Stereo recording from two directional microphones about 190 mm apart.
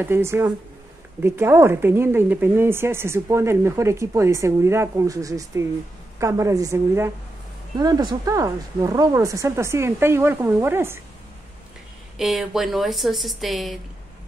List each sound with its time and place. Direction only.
0.0 s a woman's voice: 15° right (ahead or behind)
12.2 s speech: centre (ahead or behind)